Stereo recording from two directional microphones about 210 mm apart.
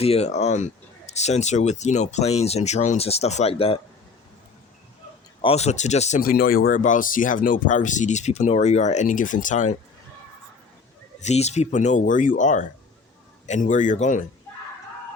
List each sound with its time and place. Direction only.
0.0 s speech: 30° left (ahead or behind)
5.4 s speech: 30° left (ahead or behind)
11.2 s speech: 30° left (ahead or behind)